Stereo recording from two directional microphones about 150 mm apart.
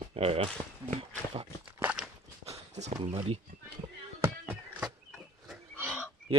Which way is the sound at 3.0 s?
40° right (ahead or behind).